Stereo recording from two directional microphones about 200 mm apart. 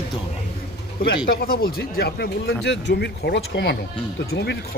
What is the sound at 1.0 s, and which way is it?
Speech, 50° left (ahead or behind).